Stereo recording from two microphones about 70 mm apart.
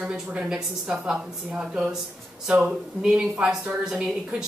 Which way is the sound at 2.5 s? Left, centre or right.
Centre.